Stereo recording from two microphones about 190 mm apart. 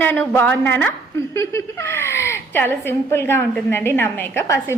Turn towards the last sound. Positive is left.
turn(degrees=15)  # may be behind; listen again after turning